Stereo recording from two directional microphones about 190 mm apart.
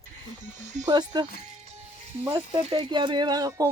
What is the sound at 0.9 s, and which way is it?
Speech, 20° right (ahead or behind).